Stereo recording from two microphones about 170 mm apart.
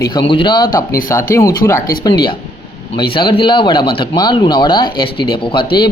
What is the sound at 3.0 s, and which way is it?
Speech, 30° left (ahead or behind).